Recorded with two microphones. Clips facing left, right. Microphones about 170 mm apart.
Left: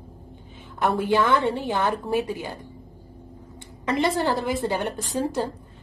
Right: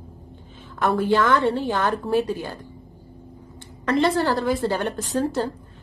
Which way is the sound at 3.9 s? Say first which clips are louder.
Right 3 dB; 15° left (ahead or behind).